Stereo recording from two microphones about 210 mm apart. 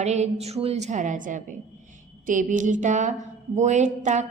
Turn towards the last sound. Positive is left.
turn(degrees=-35)  # may be behind; listen again after turning